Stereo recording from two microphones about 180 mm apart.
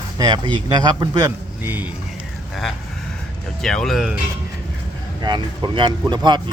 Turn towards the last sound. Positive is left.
turn(degrees=-25)  # may be behind; listen again after turning